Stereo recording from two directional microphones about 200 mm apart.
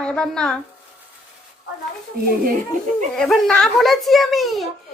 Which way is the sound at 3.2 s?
Centre (ahead or behind).